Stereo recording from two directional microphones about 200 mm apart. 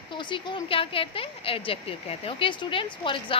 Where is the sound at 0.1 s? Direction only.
25° left (ahead or behind).